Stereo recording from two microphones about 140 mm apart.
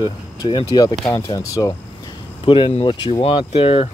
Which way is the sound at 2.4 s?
40° left (ahead or behind).